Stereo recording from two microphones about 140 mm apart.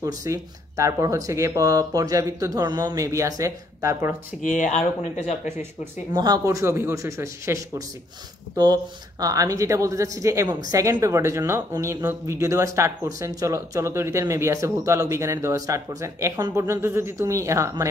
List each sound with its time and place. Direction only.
0.0 s speech: 25° right (ahead or behind)
4.4 s speech: 65° left (ahead or behind)
6.1 s speech: 30° right (ahead or behind)
9.2 s speech: 25° right (ahead or behind)